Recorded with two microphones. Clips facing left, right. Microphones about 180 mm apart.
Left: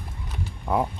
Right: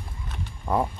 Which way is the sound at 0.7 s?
5° left (ahead or behind).